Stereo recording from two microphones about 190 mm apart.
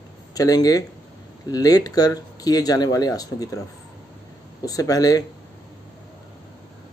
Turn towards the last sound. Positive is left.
turn(degrees=20)  # may be behind; listen again after turning